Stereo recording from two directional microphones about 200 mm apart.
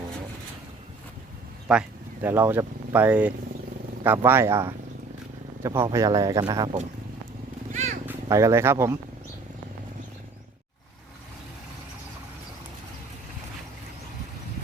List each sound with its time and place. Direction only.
1.7 s speech: 5° right (ahead or behind); by 6.7 s 20° right (ahead or behind)
7.7 s a sound: 35° right (ahead or behind)
8.0 s speech: 15° right (ahead or behind)